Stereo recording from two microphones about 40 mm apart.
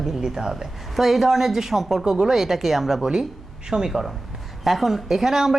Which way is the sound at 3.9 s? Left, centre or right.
Centre.